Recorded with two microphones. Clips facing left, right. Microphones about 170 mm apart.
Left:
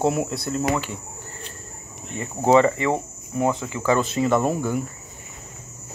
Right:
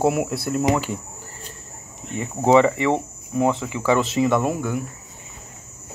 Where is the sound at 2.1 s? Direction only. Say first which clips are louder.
Right 1 dB; 10° right (ahead or behind).